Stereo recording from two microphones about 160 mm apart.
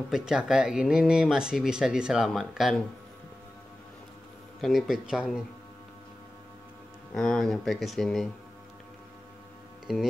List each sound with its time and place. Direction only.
0.1 s speech: 5° right (ahead or behind)
4.6 s speech: centre (ahead or behind)
7.2 s speech: 5° left (ahead or behind)